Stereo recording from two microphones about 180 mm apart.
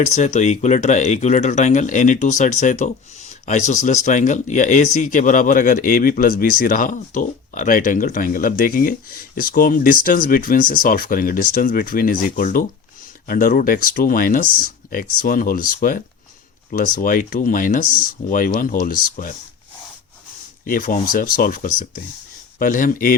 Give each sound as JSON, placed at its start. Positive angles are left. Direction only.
{"t": 0.0, "sound": "speech", "side_deg": 40}
{"t": 20.7, "sound": "speech", "side_deg": 50}